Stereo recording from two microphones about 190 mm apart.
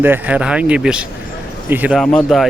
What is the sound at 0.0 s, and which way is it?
Speech, 10° right (ahead or behind).